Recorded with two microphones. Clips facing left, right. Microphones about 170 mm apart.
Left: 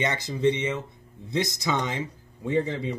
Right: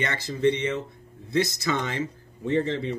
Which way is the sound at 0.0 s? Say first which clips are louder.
Even; 15° left (ahead or behind).